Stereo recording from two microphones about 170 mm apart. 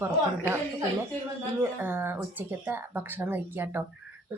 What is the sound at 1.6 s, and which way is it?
Speech, 15° right (ahead or behind).